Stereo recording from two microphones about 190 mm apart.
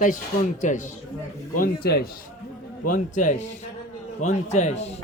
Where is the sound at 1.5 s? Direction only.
50° left (ahead or behind).